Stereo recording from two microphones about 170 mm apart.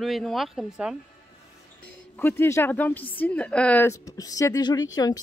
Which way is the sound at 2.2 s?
10° left (ahead or behind).